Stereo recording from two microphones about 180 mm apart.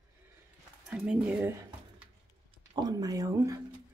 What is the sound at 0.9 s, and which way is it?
Speech, 5° right (ahead or behind).